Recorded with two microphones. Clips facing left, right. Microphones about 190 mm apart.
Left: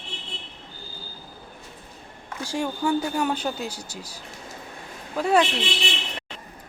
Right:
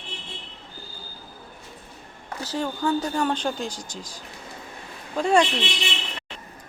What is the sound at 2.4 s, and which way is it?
A man's voice, 10° left (ahead or behind).